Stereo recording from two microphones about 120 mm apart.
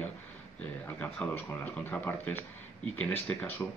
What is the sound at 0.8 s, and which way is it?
Speech, 10° left (ahead or behind).